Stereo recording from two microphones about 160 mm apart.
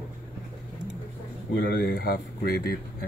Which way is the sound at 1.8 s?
75° left (ahead or behind).